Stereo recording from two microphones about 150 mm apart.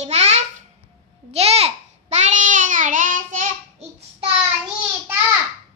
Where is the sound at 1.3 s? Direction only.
40° right (ahead or behind).